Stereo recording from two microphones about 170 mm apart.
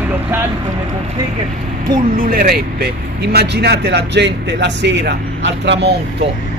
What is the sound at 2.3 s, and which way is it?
Speech, 60° right (ahead or behind).